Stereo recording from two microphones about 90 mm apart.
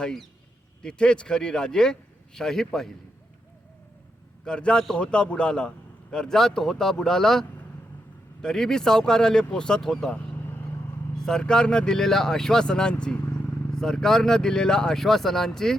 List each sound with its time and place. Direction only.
0.0 s a man's voice: 5° left (ahead or behind)
4.4 s a man's voice: 10° left (ahead or behind)
10.3 s vehicle: 20° left (ahead or behind)
11.2 s a man's voice: 5° left (ahead or behind)